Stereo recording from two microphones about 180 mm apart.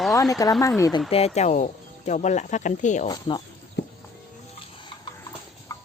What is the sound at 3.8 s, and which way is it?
Horse, 70° left (ahead or behind).